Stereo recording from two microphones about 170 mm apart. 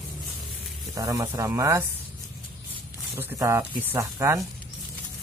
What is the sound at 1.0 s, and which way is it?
Speech, 20° right (ahead or behind).